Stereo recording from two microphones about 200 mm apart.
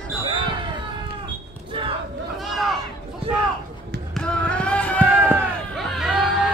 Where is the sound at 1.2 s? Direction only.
25° right (ahead or behind).